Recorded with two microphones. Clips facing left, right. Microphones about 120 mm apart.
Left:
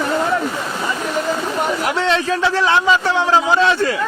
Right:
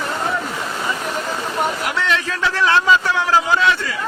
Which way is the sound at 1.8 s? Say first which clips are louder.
Left 4 dB; 30° left (ahead or behind).